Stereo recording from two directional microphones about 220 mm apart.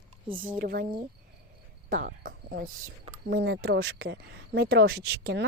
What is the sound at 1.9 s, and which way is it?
Speech, 40° right (ahead or behind).